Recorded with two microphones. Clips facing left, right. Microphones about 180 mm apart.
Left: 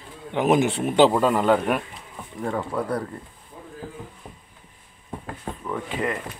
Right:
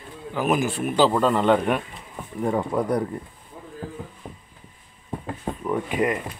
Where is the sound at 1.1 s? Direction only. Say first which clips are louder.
Even; 5° left (ahead or behind).